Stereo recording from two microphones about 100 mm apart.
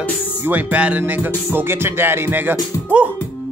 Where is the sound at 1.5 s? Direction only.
20° right (ahead or behind).